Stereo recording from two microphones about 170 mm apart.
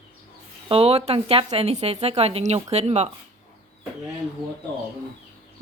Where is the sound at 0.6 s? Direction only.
35° right (ahead or behind).